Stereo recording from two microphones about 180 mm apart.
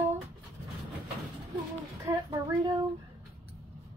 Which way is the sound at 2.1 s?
20° right (ahead or behind).